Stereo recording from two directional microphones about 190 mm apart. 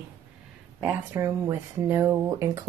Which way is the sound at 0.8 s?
15° right (ahead or behind).